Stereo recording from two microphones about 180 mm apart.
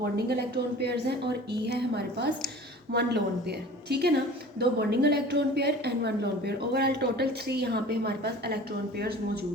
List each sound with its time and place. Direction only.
0.3 s a woman's voice: 65° right (ahead or behind)